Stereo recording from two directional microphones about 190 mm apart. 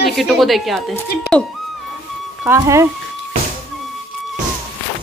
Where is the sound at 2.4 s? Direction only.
15° right (ahead or behind).